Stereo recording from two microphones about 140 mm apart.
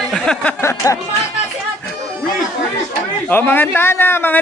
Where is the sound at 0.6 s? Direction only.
20° left (ahead or behind).